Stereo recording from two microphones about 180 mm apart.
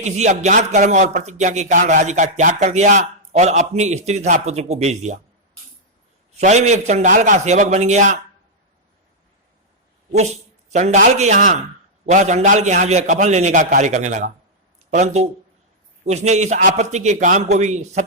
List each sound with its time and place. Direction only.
0.0 s speech: 40° right (ahead or behind)
6.3 s speech: 40° right (ahead or behind)
10.1 s speech: 40° right (ahead or behind)